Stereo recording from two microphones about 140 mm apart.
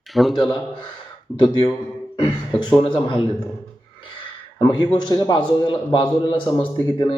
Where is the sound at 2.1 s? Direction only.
45° left (ahead or behind).